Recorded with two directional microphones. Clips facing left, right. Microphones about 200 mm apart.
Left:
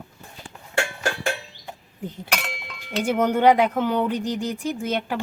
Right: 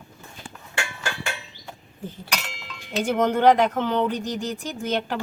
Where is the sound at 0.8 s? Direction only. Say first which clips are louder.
Left 6 dB; 50° left (ahead or behind).